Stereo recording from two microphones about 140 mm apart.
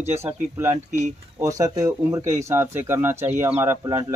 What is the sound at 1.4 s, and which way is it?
Speech, 25° right (ahead or behind).